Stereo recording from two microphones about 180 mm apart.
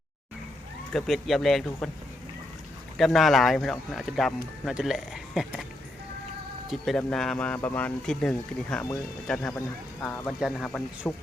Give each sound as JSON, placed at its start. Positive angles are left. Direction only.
{"t": 0.9, "sound": "speech", "side_deg": 0}
{"t": 3.0, "sound": "speech", "side_deg": 0}
{"t": 6.7, "sound": "speech", "side_deg": 0}
{"t": 9.6, "sound": "speech", "side_deg": 15}
{"t": 10.2, "sound": "speech", "side_deg": 0}